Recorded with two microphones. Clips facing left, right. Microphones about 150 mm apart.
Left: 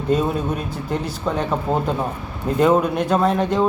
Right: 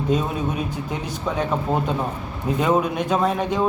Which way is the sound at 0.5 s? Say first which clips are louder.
Left 2 dB; 10° right (ahead or behind).